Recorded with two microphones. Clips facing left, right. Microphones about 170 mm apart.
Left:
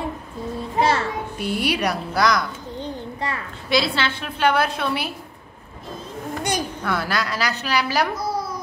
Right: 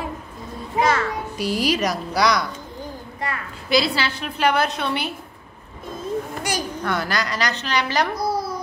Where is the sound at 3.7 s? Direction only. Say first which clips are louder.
Right 1 dB; centre (ahead or behind).